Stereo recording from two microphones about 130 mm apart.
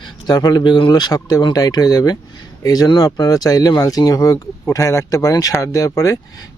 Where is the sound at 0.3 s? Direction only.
30° left (ahead or behind).